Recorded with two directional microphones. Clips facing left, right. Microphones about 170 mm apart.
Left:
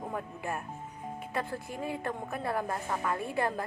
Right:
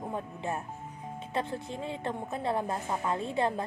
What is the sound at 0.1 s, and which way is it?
A woman's voice, 25° right (ahead or behind).